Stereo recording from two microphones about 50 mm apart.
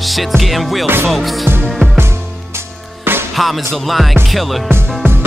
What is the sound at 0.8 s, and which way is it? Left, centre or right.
Music, right.